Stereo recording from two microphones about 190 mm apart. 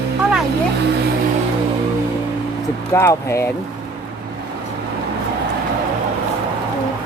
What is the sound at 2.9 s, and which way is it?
Speech, 15° left (ahead or behind).